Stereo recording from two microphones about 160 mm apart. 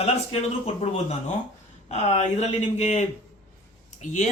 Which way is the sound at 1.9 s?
45° left (ahead or behind).